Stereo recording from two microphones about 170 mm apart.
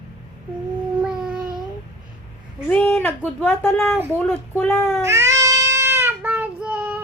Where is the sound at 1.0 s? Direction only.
5° right (ahead or behind).